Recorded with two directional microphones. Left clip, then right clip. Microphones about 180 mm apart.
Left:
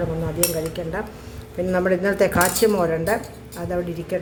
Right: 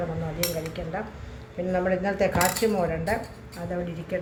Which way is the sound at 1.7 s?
60° left (ahead or behind).